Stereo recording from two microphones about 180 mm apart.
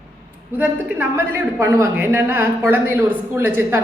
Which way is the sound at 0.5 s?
10° right (ahead or behind).